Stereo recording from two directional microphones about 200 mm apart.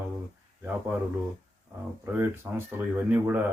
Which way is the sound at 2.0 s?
10° right (ahead or behind).